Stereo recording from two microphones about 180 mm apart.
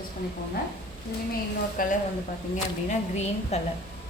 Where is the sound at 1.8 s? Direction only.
50° left (ahead or behind).